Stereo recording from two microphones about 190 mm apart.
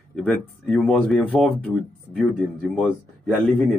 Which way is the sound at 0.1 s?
Centre (ahead or behind).